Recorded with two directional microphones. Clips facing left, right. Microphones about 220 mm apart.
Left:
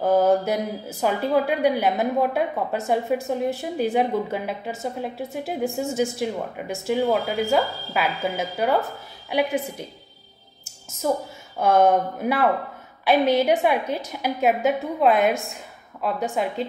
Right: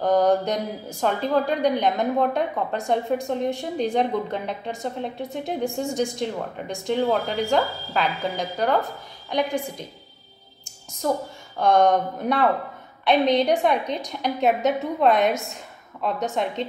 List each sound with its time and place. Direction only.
0.0 s a woman's voice: 5° left (ahead or behind)
10.6 s music: 5° left (ahead or behind)
11.5 s a woman's voice: 5° left (ahead or behind)